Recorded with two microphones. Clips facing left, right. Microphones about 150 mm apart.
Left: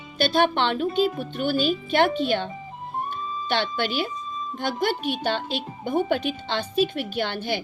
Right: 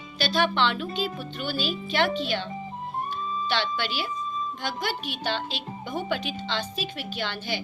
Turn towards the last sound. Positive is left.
turn(degrees=55)  # may be behind; listen again after turning